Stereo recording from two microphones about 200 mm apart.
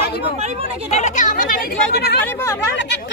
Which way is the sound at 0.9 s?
35° left (ahead or behind).